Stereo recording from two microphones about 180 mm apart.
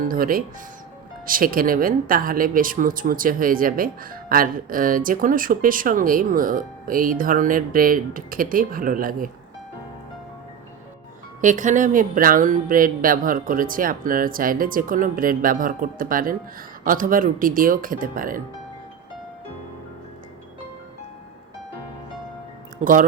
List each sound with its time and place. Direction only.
0.0 s speech: 50° right (ahead or behind)
11.3 s speech: 45° right (ahead or behind)
22.8 s speech: 50° right (ahead or behind)